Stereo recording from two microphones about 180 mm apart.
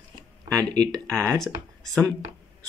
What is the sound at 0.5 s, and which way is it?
Speech, 20° right (ahead or behind).